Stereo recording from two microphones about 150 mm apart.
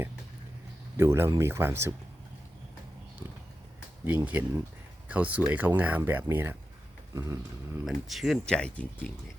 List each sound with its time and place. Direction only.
0.9 s speech: 15° right (ahead or behind)
4.0 s speech: 10° right (ahead or behind)
7.1 s a sound: 20° right (ahead or behind)
7.9 s speech: centre (ahead or behind)